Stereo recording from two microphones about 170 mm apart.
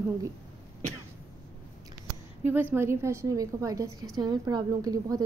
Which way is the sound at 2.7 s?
15° right (ahead or behind).